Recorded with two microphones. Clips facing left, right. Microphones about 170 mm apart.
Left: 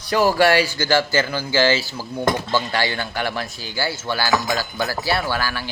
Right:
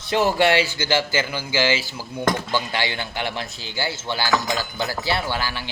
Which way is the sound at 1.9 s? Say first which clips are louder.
Left 3 dB; 40° left (ahead or behind).